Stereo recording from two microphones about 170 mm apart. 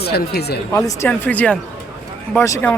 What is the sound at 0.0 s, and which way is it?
Speech, 70° left (ahead or behind).